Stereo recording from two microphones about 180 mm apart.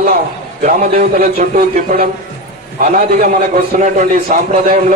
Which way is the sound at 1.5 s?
55° right (ahead or behind).